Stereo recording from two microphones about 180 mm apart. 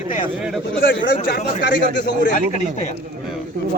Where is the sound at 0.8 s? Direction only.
90° left.